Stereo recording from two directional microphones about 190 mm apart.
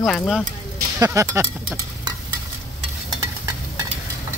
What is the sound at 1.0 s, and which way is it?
Speech, 15° right (ahead or behind).